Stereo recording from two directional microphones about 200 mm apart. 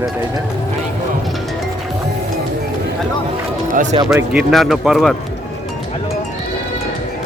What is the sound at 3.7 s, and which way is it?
Speech, 40° right (ahead or behind).